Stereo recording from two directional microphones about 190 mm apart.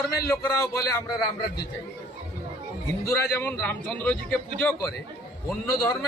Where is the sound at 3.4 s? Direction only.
5° left (ahead or behind).